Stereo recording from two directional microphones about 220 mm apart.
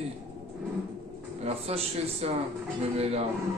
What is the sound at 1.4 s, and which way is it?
Music, 30° right (ahead or behind).